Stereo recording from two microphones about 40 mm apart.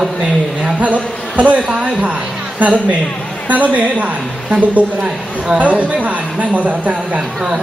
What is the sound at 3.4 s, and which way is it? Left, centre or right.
Speech, right.